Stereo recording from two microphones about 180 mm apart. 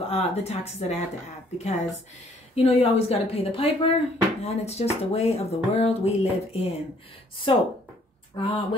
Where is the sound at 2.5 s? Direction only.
35° left (ahead or behind).